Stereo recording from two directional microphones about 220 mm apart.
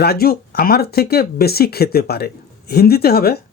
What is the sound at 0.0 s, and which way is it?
Speech, 45° left (ahead or behind).